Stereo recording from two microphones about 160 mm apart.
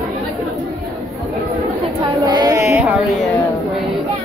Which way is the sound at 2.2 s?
25° right (ahead or behind).